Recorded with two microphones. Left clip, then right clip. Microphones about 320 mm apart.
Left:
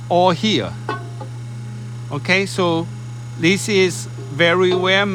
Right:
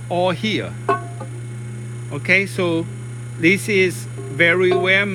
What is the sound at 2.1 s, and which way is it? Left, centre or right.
Speech, centre.